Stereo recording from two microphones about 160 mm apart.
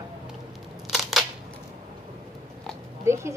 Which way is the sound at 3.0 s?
15° right (ahead or behind).